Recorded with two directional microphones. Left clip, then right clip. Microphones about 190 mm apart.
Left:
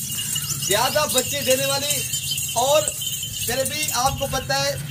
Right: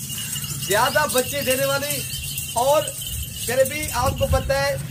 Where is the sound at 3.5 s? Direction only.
35° right (ahead or behind).